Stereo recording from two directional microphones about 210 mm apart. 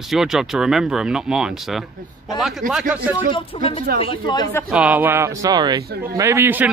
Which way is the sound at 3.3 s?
25° left (ahead or behind).